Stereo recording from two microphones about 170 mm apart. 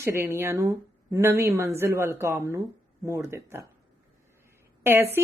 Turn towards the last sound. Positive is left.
turn(degrees=-15)  # may be behind; listen again after turning